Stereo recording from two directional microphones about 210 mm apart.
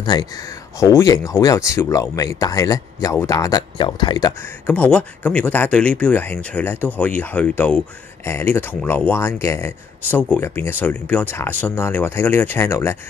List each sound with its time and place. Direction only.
0.0 s speech: 20° left (ahead or behind)
4.6 s speech: 5° left (ahead or behind)